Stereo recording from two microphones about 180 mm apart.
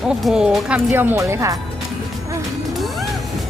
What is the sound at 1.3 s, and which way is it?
Speech, 15° right (ahead or behind).